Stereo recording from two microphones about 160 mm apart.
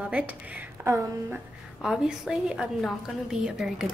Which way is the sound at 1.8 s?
5° right (ahead or behind).